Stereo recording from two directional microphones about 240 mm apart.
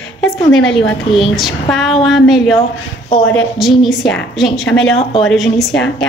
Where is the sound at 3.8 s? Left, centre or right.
Centre.